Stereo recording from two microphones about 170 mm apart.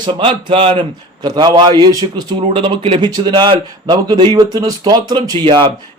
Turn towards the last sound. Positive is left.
turn(degrees=-25)  # may be behind; listen again after turning